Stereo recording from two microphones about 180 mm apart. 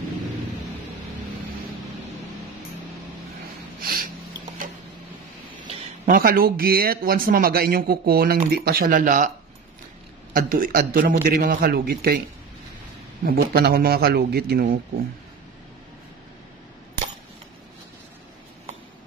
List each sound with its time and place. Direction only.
3.8 s snort: 55° right (ahead or behind)
6.0 s speech: 55° right (ahead or behind)
10.3 s a man's voice: 55° right (ahead or behind)
13.2 s speech: 55° right (ahead or behind)